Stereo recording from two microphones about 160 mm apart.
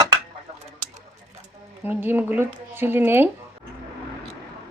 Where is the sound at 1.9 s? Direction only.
10° right (ahead or behind).